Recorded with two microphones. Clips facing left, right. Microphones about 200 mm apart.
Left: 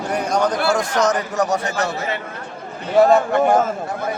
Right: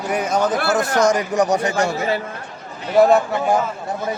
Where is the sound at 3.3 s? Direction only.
50° left (ahead or behind).